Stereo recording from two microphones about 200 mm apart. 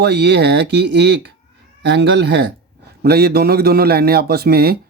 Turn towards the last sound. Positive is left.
turn(degrees=-50)  # may be behind; listen again after turning